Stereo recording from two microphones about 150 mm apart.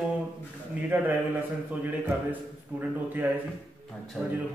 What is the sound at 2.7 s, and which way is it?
Speech, 10° right (ahead or behind).